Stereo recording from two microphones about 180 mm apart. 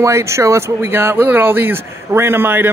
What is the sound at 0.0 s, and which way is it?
Speech, 15° right (ahead or behind).